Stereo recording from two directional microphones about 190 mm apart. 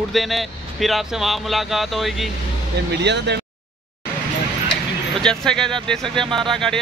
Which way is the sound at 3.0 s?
65° right (ahead or behind).